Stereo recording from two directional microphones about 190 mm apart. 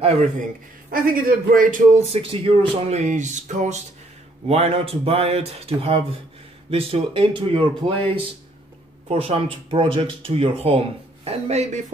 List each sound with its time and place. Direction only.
0.4 s a man's voice: 50° right (ahead or behind); by 8.1 s 30° right (ahead or behind)
9.1 s a man's voice: 30° right (ahead or behind)